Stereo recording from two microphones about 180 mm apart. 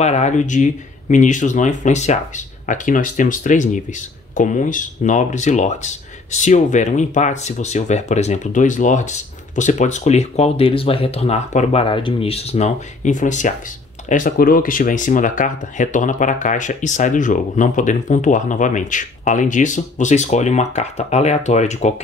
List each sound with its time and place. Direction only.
0.0 s speech: 40° left (ahead or behind)